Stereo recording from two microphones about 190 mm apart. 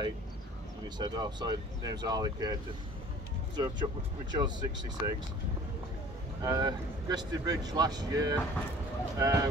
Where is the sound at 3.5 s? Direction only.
25° right (ahead or behind).